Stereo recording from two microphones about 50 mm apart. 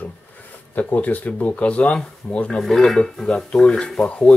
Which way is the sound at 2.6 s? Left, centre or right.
Centre.